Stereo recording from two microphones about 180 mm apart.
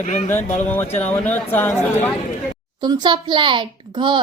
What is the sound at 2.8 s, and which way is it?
A child's voice, 25° right (ahead or behind).